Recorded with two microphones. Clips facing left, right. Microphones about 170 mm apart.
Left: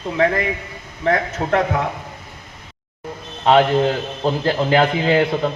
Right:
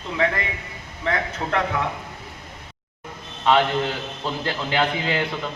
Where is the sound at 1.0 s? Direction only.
40° left (ahead or behind).